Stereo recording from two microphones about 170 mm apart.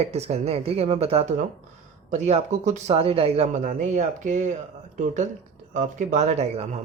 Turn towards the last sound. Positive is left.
turn(degrees=-40)  # may be behind; listen again after turning